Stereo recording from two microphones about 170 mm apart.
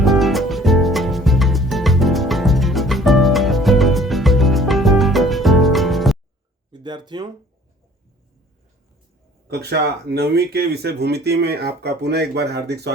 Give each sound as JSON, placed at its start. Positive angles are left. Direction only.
{"t": 0.0, "sound": "music", "side_deg": 0}
{"t": 6.7, "sound": "a sound", "side_deg": -25}
{"t": 9.5, "sound": "speech", "side_deg": -70}